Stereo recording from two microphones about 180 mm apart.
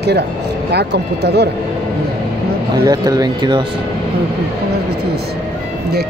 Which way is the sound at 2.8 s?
20° right (ahead or behind).